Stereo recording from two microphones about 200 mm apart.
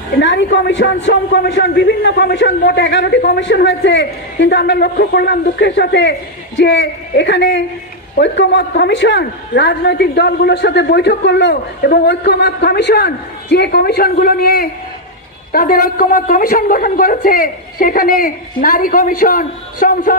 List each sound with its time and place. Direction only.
0.2 s a man's voice: 65° left (ahead or behind); by 20.2 s 45° left (ahead or behind)